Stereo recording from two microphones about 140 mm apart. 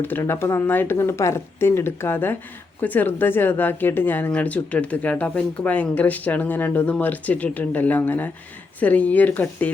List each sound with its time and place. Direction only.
0.0 s speech: 15° left (ahead or behind)